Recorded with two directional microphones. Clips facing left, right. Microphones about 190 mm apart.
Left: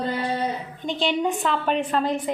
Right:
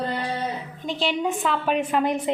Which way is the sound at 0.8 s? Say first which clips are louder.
Left 1 dB; centre (ahead or behind).